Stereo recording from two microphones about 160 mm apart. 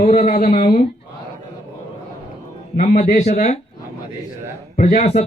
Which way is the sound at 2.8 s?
55° left (ahead or behind).